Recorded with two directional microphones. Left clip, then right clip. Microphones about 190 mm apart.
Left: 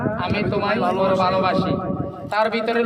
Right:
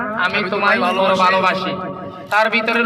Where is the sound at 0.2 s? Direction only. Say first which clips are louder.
Right 5 dB; 20° right (ahead or behind).